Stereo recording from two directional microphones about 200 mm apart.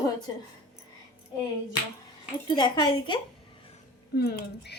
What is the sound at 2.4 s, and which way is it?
Speech, 20° left (ahead or behind).